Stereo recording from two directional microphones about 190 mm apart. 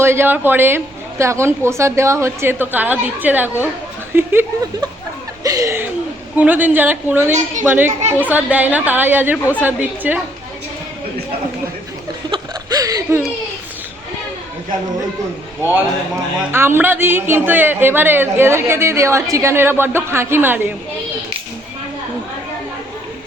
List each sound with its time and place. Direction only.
0.0 s a man's voice: 10° right (ahead or behind)
7.3 s a woman's voice: 40° right (ahead or behind)
7.6 s a man's voice: 10° right (ahead or behind)
12.3 s a sound: 20° right (ahead or behind)
16.5 s a man's voice: 10° right (ahead or behind)